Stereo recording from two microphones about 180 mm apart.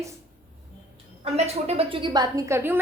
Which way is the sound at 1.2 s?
35° right (ahead or behind).